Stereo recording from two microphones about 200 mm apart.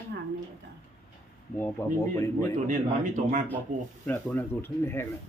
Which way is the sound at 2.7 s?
40° right (ahead or behind).